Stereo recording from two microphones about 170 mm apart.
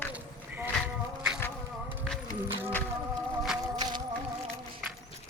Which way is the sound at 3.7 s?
25° right (ahead or behind).